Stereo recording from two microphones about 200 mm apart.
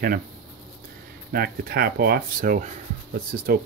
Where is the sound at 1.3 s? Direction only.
50° right (ahead or behind).